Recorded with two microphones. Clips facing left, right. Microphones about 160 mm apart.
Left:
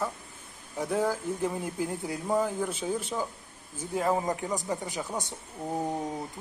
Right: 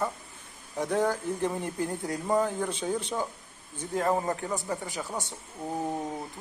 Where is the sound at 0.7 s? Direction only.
5° left (ahead or behind).